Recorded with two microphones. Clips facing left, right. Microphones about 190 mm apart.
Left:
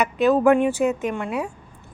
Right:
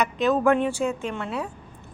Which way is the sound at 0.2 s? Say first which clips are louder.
Left 5 dB; 10° left (ahead or behind).